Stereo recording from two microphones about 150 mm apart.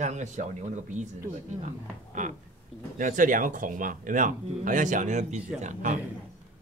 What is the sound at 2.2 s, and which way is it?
A man's voice, 55° right (ahead or behind).